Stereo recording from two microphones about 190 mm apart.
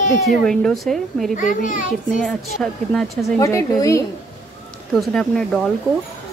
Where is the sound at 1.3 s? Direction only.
45° left (ahead or behind).